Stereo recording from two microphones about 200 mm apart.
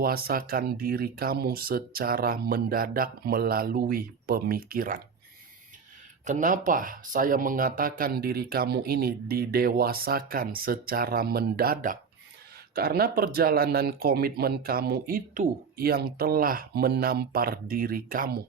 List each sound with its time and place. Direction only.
0.0 s speech: 50° right (ahead or behind)
6.2 s speech: 40° right (ahead or behind)